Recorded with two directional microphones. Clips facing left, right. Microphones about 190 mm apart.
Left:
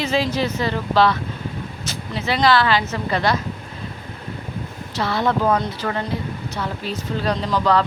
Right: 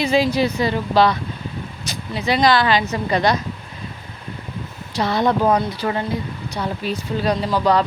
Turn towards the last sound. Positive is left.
turn(degrees=-10)  # may be behind; listen again after turning